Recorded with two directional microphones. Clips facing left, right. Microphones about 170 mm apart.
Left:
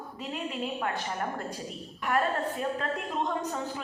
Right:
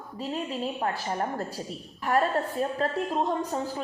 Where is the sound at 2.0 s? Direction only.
35° right (ahead or behind).